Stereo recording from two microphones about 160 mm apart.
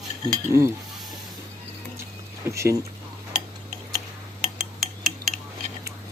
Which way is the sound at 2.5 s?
20° right (ahead or behind).